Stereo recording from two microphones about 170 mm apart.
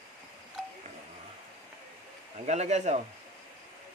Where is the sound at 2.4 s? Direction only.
40° right (ahead or behind).